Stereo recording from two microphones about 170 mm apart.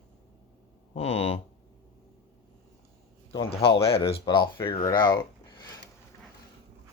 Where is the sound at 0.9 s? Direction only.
35° left (ahead or behind).